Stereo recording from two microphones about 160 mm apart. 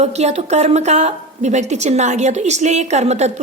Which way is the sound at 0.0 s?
45° right (ahead or behind).